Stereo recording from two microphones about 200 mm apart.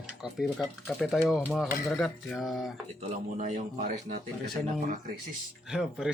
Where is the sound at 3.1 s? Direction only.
35° right (ahead or behind).